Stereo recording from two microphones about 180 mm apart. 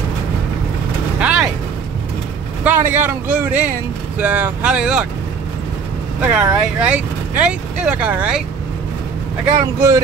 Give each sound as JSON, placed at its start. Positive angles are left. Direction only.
{"t": 1.2, "sound": "vehicle", "side_deg": -5}
{"t": 2.6, "sound": "speech", "side_deg": -10}
{"t": 6.2, "sound": "speech", "side_deg": -5}
{"t": 9.8, "sound": "speech", "side_deg": -15}